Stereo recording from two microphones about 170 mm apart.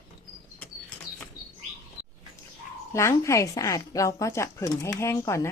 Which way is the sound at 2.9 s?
15° left (ahead or behind).